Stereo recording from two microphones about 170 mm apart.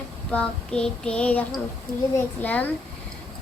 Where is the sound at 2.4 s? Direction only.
10° left (ahead or behind).